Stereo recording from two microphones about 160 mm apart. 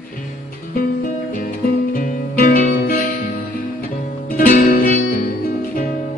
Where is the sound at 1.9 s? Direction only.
60° left (ahead or behind).